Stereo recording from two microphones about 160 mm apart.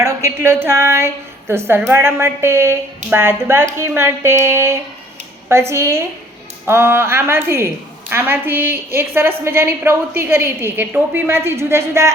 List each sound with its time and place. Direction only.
0.0 s a woman's voice: 15° right (ahead or behind)